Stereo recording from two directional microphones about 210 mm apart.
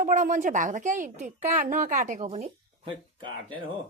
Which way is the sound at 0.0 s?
35° right (ahead or behind).